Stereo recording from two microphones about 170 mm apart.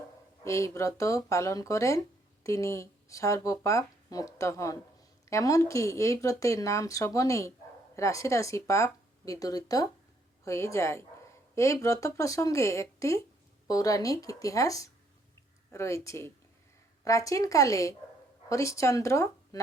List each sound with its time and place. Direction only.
0.4 s speech: 15° left (ahead or behind)